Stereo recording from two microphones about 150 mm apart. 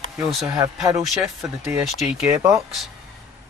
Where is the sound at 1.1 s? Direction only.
Centre (ahead or behind).